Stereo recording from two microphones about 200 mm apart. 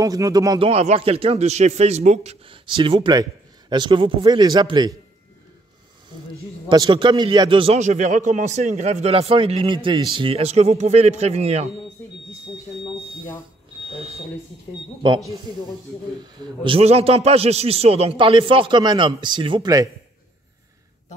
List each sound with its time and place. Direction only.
0.0 s speech: 15° right (ahead or behind)
0.7 s a man's voice: 30° right (ahead or behind)
6.3 s a man's voice: 20° right (ahead or behind)
13.8 s a man's voice: 30° right (ahead or behind)